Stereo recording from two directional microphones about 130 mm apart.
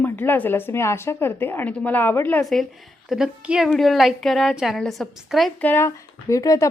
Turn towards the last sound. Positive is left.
turn(degrees=25)  # may be behind; listen again after turning